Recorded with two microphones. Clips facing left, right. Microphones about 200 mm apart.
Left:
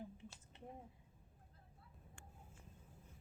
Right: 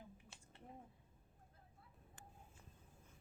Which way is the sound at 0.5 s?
20° left (ahead or behind).